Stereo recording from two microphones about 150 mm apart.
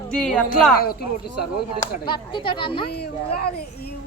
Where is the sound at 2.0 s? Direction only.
30° left (ahead or behind).